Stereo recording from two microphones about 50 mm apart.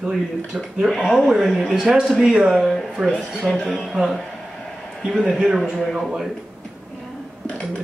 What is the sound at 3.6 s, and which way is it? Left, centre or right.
Speech, centre.